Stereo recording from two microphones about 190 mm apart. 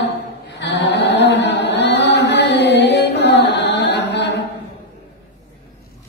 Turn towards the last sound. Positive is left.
turn(degrees=65)  # may be behind; listen again after turning